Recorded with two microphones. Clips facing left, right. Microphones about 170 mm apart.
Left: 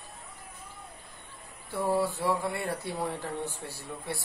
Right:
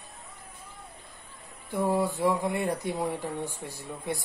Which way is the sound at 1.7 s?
15° right (ahead or behind).